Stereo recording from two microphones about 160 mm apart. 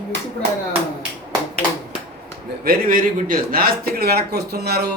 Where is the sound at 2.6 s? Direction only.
60° right (ahead or behind); by 4.9 s 80° right.